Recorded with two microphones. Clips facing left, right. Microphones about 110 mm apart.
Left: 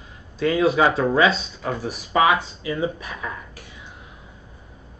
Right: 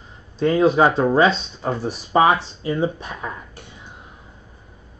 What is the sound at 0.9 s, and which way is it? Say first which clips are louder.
Speech: right 2 dB; 35° right (ahead or behind).